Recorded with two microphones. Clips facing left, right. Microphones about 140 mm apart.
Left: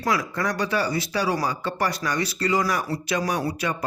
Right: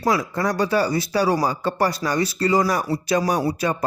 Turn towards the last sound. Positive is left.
turn(degrees=-35)  # may be behind; listen again after turning